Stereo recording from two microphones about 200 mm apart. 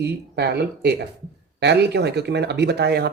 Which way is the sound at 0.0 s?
55° right (ahead or behind).